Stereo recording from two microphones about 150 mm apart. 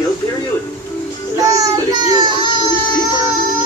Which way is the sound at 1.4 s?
25° right (ahead or behind).